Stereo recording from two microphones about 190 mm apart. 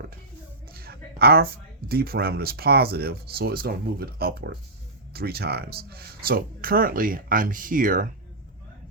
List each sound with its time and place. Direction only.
0.7 s speech: 55° right (ahead or behind)